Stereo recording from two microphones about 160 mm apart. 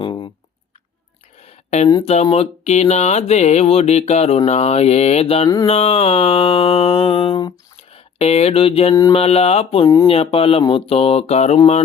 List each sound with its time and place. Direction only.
0.0 s a sound: 30° left (ahead or behind)
1.5 s a sound: 45° left (ahead or behind)
2.3 s mantra: 40° left (ahead or behind)
7.9 s speech: 40° left (ahead or behind)
9.1 s mantra: 40° left (ahead or behind)
9.8 s speech: 20° left (ahead or behind)
10.1 s mantra: 35° left (ahead or behind)